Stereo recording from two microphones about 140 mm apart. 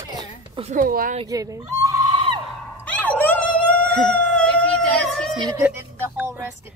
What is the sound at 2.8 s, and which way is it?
Dog, 10° left (ahead or behind).